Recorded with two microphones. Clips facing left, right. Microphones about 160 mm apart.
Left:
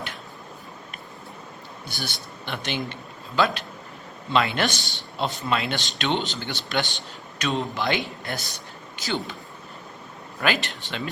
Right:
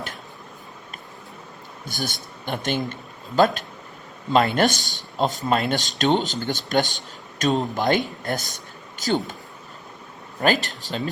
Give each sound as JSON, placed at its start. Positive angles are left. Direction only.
{"t": 1.9, "sound": "speech", "side_deg": -45}
{"t": 10.4, "sound": "speech", "side_deg": -40}